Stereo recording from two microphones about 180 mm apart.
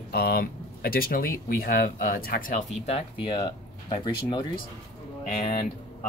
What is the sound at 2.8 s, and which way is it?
Speech, 30° left (ahead or behind).